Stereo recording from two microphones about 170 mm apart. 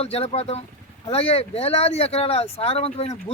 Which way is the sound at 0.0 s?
35° left (ahead or behind).